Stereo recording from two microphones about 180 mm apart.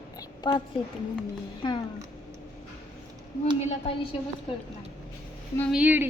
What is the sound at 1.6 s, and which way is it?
Speech, 30° left (ahead or behind).